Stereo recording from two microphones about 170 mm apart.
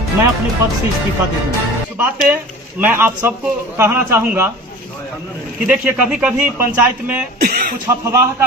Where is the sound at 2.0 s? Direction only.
10° right (ahead or behind).